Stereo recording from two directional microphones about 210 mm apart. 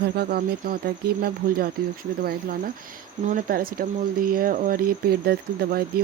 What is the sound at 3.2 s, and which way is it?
Speech, 40° right (ahead or behind).